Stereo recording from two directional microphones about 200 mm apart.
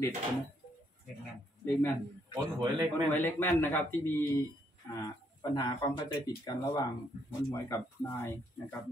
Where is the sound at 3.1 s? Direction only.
10° left (ahead or behind).